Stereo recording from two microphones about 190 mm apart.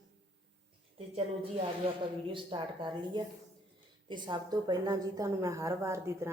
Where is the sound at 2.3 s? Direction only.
25° right (ahead or behind).